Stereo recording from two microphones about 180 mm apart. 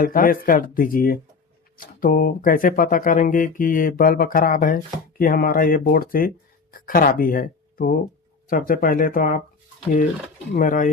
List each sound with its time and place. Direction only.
0.0 s speech: 50° left (ahead or behind)
10.5 s speech: 50° left (ahead or behind)